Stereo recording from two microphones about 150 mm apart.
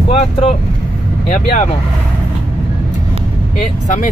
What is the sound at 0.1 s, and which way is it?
Speech, 40° left (ahead or behind).